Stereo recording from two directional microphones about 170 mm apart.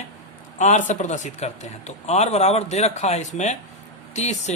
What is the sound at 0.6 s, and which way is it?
A man's voice, 45° left (ahead or behind).